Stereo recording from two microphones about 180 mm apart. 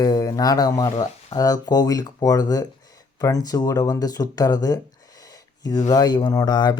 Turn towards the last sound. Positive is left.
turn(degrees=25)  # may be behind; listen again after turning